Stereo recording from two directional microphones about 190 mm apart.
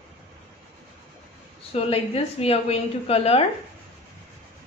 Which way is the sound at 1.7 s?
30° left (ahead or behind).